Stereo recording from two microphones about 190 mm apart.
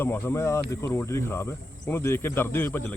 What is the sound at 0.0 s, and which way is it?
Speech, 10° left (ahead or behind).